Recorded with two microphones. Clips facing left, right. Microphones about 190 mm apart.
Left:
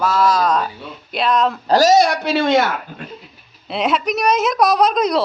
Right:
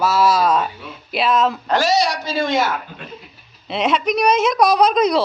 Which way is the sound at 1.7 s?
40° left (ahead or behind).